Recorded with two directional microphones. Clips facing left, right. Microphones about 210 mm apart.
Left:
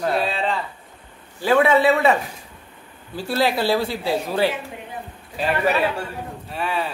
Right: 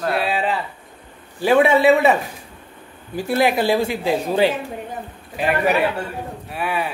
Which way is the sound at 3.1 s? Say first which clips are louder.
Right 3 dB; 20° right (ahead or behind).